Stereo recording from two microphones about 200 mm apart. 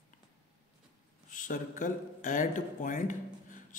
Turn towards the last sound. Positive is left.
turn(degrees=40)  # may be behind; listen again after turning